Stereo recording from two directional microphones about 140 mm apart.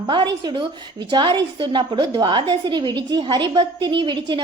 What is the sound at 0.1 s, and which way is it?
A woman's voice, 30° right (ahead or behind).